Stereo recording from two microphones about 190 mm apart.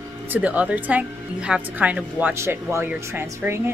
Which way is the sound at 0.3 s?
5° right (ahead or behind).